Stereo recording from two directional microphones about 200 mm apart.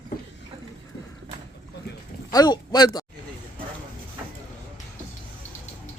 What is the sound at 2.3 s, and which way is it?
Speech, 20° left (ahead or behind).